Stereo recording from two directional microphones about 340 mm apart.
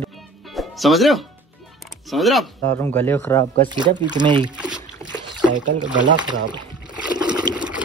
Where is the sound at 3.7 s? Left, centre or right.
Centre.